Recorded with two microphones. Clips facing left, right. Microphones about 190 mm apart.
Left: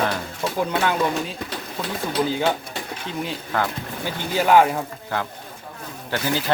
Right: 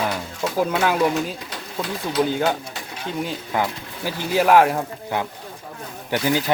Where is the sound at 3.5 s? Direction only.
15° right (ahead or behind).